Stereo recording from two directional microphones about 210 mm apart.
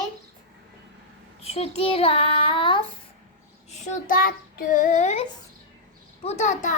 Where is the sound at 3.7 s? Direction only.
40° left (ahead or behind).